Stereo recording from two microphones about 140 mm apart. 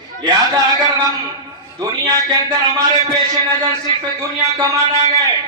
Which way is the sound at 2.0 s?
30° right (ahead or behind).